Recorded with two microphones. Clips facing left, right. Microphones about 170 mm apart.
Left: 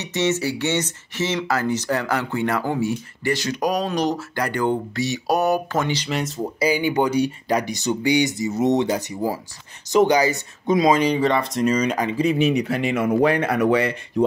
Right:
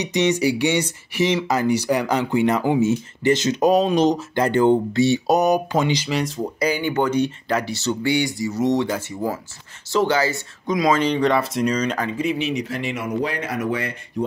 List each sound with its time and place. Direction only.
0.0 s speech: 15° right (ahead or behind)
6.0 s speech: centre (ahead or behind); by 11.0 s 25° left (ahead or behind)
11.0 s speech: 10° left (ahead or behind)
11.2 s speech: centre (ahead or behind)
12.2 s speech: 45° left (ahead or behind); by 14.2 s 85° left